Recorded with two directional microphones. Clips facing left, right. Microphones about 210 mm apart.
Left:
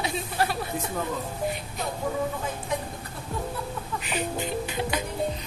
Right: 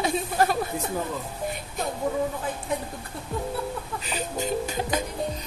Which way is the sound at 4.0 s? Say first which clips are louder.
Left 2 dB; 35° right (ahead or behind).